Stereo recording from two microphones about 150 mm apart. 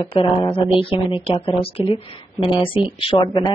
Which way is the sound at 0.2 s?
35° left (ahead or behind).